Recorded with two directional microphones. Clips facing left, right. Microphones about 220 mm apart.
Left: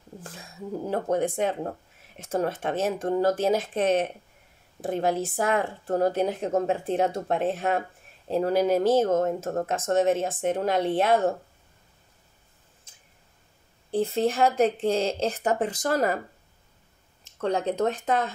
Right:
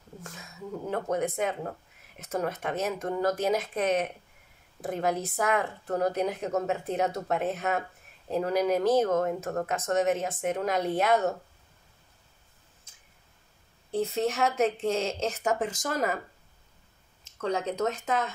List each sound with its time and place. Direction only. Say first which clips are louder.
0.2 s speech: left 2 dB; 30° left (ahead or behind)
13.9 s speech: left 4 dB; 30° left (ahead or behind)
17.5 s speech: left 3 dB; 35° left (ahead or behind)